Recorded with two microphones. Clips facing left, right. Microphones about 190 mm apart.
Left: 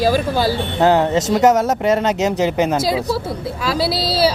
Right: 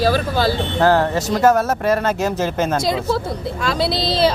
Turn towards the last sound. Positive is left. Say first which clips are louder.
# even
turn(degrees=5)  # may be behind; listen again after turning